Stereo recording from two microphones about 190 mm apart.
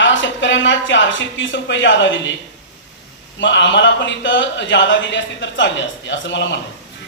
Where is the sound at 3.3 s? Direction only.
70° left (ahead or behind).